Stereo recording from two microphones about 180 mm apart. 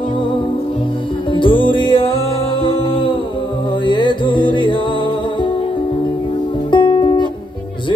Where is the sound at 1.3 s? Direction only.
25° left (ahead or behind).